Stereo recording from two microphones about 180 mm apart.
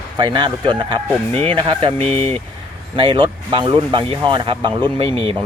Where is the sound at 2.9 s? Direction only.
25° right (ahead or behind).